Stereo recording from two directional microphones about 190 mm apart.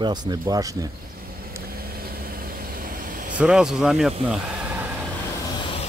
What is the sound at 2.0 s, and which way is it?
Vehicle, 50° right (ahead or behind).